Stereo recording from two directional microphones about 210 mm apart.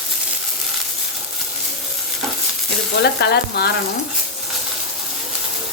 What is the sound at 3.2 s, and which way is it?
Sizzle, 50° left (ahead or behind).